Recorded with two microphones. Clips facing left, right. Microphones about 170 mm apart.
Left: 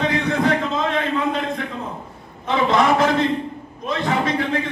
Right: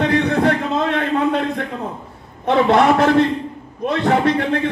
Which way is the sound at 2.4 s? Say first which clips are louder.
Right 4 dB; 60° right (ahead or behind).